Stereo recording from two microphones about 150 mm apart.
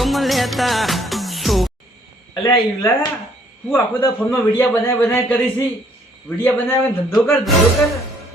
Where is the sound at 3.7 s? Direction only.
15° left (ahead or behind).